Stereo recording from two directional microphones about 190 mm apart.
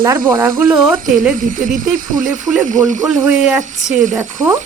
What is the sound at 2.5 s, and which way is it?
Speech, centre (ahead or behind).